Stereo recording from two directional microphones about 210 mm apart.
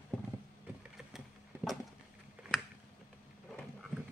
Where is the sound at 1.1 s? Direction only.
Centre (ahead or behind).